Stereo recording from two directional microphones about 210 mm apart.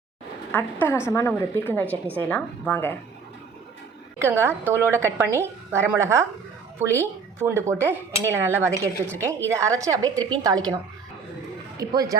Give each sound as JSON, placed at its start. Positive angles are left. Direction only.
{"t": 0.5, "sound": "a woman's voice", "side_deg": 10}
{"t": 4.2, "sound": "speech", "side_deg": -10}
{"t": 11.8, "sound": "speech", "side_deg": -15}